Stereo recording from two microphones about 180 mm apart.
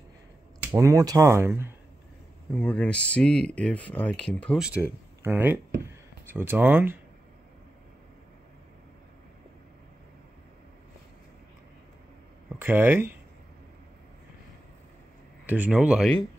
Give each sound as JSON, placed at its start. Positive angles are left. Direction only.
{"t": 0.7, "sound": "speech", "side_deg": -20}
{"t": 2.5, "sound": "speech", "side_deg": 5}
{"t": 12.5, "sound": "speech", "side_deg": -10}
{"t": 15.4, "sound": "speech", "side_deg": -10}